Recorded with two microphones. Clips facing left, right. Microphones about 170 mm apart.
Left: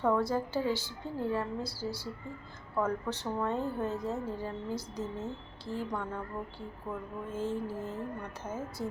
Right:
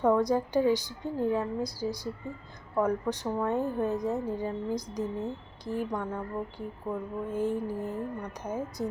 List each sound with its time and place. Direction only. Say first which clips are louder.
0.0 s a woman's voice: right 4 dB; 15° right (ahead or behind)